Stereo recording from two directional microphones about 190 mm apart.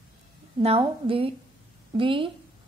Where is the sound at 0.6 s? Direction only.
30° right (ahead or behind).